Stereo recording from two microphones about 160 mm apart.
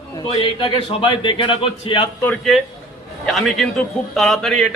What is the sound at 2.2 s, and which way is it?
A man's voice, 5° left (ahead or behind).